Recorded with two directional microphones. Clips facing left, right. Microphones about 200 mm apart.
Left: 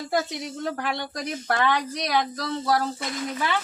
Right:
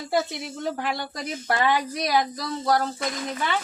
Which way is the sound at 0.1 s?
5° right (ahead or behind).